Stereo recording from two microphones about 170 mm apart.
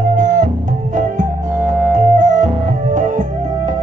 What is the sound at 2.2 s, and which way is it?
Music, 45° right (ahead or behind).